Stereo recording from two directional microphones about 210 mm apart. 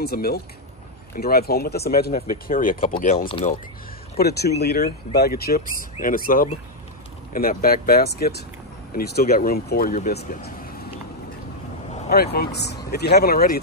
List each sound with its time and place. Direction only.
0.0 s speech: 45° left (ahead or behind)
3.3 s speech: 25° left (ahead or behind)
4.2 s speech: 50° left (ahead or behind)
12.1 s speech: 50° left (ahead or behind)